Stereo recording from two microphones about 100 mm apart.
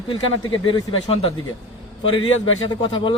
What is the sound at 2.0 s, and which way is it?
Speech, 60° left (ahead or behind).